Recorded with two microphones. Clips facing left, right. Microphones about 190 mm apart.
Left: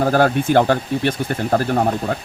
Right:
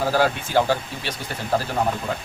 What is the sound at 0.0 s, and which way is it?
Speech, 50° left (ahead or behind).